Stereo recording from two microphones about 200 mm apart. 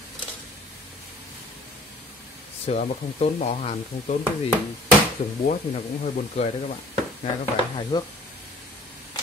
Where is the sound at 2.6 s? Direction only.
30° left (ahead or behind).